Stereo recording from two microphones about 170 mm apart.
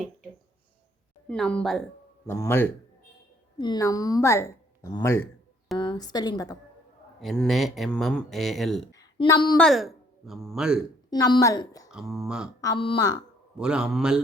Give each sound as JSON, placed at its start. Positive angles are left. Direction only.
{"t": 1.3, "sound": "speech", "side_deg": 5}
{"t": 2.2, "sound": "a woman's voice", "side_deg": 15}
{"t": 7.2, "sound": "speech", "side_deg": 0}
{"t": 8.9, "sound": "a woman's voice", "side_deg": 20}
{"t": 9.6, "sound": "speech", "side_deg": 0}
{"t": 11.1, "sound": "speech", "side_deg": 25}
{"t": 11.9, "sound": "speech", "side_deg": 0}
{"t": 12.6, "sound": "speech", "side_deg": 30}
{"t": 13.6, "sound": "speech", "side_deg": -5}